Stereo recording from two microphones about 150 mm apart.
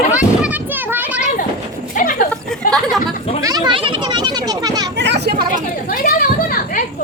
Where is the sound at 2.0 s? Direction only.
65° left (ahead or behind).